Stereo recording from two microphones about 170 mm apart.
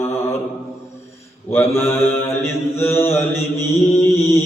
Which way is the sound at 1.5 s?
15° left (ahead or behind).